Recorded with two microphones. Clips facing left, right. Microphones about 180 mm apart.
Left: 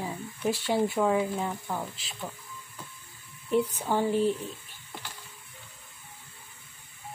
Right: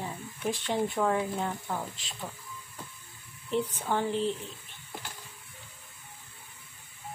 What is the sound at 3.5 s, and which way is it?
Speech, 10° left (ahead or behind).